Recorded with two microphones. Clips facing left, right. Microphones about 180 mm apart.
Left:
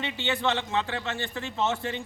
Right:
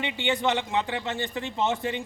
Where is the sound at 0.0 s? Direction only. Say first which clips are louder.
Right 2 dB; 15° right (ahead or behind).